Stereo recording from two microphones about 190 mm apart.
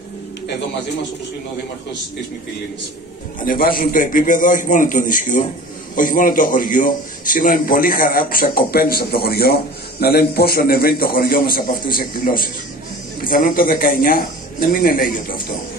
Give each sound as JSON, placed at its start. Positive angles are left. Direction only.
{"t": 3.4, "sound": "a man's voice", "side_deg": 50}